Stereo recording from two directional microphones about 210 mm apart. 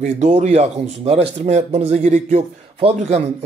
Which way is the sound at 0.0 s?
35° right (ahead or behind).